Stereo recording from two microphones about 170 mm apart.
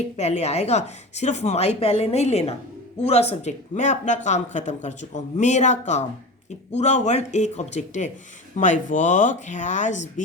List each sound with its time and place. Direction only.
0.2 s a woman's voice: 40° left (ahead or behind)